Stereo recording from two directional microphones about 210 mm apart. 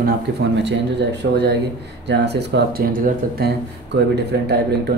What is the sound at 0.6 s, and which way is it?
Speech, 55° right (ahead or behind).